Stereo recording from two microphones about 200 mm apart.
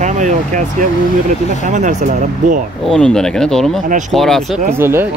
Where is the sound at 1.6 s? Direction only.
40° right (ahead or behind).